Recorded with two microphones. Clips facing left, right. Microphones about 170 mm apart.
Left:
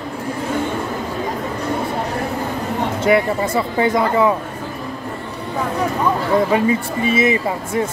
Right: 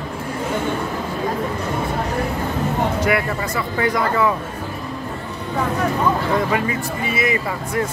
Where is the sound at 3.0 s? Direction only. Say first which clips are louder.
Left 4 dB; 25° left (ahead or behind).